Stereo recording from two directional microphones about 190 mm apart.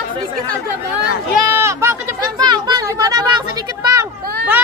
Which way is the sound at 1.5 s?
15° right (ahead or behind).